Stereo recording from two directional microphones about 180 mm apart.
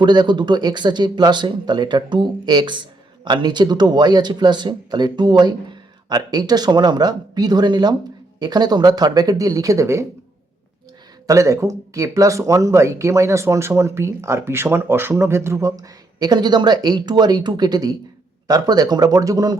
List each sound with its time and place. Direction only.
0.0 s speech: 25° right (ahead or behind)
11.3 s speech: 15° right (ahead or behind)